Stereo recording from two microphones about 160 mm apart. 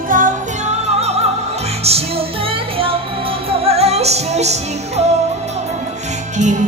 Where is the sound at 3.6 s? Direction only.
40° right (ahead or behind).